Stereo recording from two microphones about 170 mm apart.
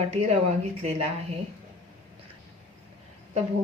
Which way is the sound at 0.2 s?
40° right (ahead or behind).